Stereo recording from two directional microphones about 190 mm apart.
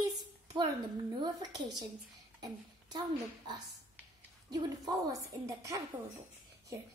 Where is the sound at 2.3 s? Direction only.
20° right (ahead or behind).